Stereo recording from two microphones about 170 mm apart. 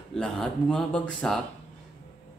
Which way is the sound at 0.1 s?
5° left (ahead or behind).